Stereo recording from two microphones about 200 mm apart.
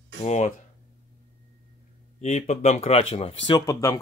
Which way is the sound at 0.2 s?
35° left (ahead or behind).